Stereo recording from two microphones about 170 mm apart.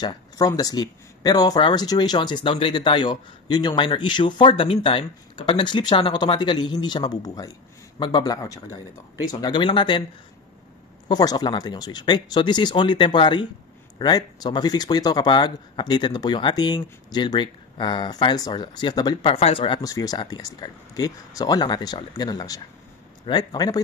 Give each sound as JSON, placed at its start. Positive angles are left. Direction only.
{"t": 0.0, "sound": "speech", "side_deg": 25}
{"t": 11.1, "sound": "speech", "side_deg": 25}